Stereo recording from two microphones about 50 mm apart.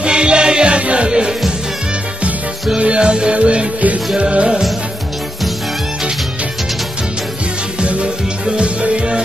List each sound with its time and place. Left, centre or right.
0.0 s music: centre
2.8 s music: centre
7.8 s music: right